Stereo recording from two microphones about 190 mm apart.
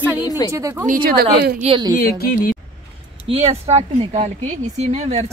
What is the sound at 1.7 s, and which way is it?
Speech, 25° right (ahead or behind).